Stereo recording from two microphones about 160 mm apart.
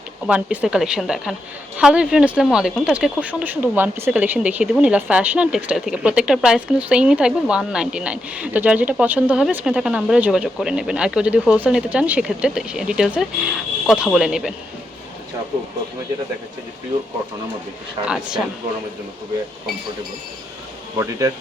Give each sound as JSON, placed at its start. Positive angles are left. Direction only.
{"t": 0.3, "sound": "a woman's voice", "side_deg": -10}
{"t": 18.0, "sound": "speech", "side_deg": -5}
{"t": 21.0, "sound": "speech", "side_deg": -20}